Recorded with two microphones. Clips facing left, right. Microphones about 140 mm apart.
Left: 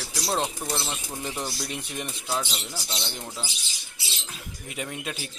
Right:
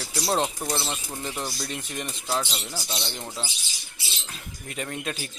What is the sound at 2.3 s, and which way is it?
Speech, 5° right (ahead or behind).